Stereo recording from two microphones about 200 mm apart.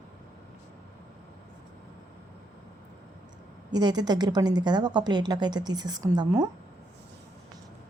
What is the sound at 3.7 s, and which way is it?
A woman's voice, 20° right (ahead or behind).